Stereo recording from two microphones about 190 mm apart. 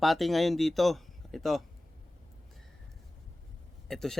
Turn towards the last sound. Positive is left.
turn(degrees=5)  # may be behind; listen again after turning